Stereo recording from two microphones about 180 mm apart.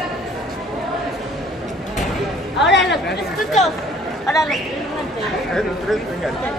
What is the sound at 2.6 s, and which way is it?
Chatter, 75° left (ahead or behind).